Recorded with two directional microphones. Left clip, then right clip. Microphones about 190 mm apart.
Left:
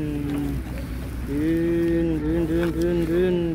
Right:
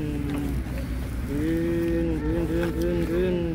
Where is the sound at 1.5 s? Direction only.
40° left (ahead or behind).